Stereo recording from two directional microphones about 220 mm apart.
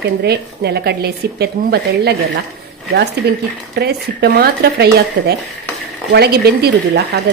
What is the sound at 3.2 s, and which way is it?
A woman's voice, 50° right (ahead or behind).